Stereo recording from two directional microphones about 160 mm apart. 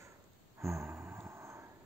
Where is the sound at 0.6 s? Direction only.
15° right (ahead or behind).